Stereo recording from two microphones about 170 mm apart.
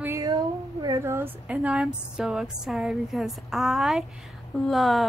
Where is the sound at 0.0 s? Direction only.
20° right (ahead or behind).